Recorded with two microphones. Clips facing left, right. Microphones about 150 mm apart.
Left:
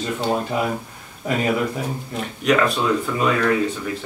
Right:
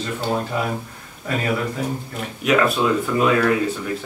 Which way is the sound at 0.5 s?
15° left (ahead or behind).